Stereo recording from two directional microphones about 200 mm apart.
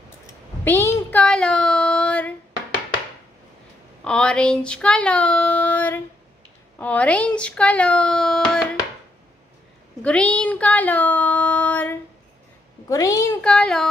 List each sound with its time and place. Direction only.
0.7 s child singing: 10° left (ahead or behind)
4.0 s speech: 5° left (ahead or behind)
10.0 s a woman's voice: 5° left (ahead or behind)
13.4 s speech: 5° left (ahead or behind)